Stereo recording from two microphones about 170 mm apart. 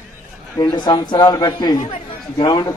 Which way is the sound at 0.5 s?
25° left (ahead or behind).